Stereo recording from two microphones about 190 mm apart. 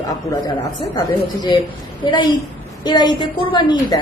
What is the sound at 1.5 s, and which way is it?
A woman's voice, 20° left (ahead or behind).